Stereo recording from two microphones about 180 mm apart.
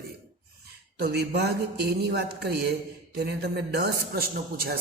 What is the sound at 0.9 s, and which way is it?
Speech, 65° right (ahead or behind).